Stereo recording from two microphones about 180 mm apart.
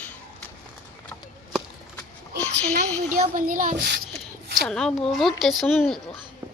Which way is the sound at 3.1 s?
50° right (ahead or behind).